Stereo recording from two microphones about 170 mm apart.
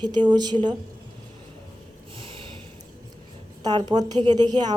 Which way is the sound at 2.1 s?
30° right (ahead or behind).